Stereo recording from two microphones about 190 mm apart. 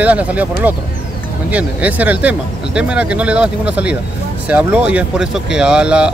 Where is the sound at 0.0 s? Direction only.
5° right (ahead or behind).